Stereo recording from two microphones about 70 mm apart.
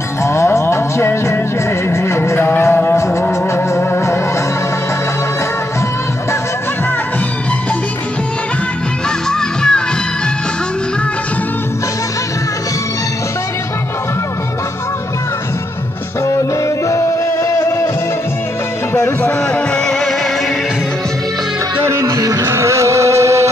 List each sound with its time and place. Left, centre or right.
0.2 s music: left
9.3 s music: centre
16.3 s music: left
18.9 s music: left
19.5 s music: centre
21.8 s music: right
22.4 s a sound: right